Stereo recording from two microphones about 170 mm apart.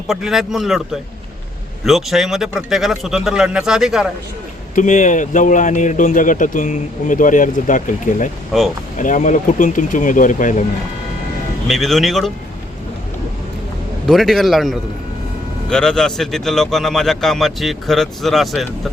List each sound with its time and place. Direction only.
0.1 s a man's voice: centre (ahead or behind)
1.8 s a man's voice: centre (ahead or behind)
4.7 s speech: 50° left (ahead or behind)
8.5 s a man's voice: centre (ahead or behind)
9.0 s speech: 50° left (ahead or behind)
11.7 s a man's voice: centre (ahead or behind)
14.1 s a man's voice: centre (ahead or behind)